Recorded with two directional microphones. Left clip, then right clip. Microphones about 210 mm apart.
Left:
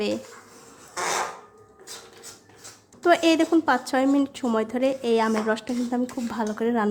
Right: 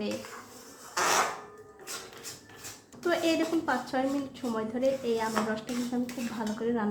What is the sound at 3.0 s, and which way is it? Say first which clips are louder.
A woman's voice: left 8 dB; 40° left (ahead or behind).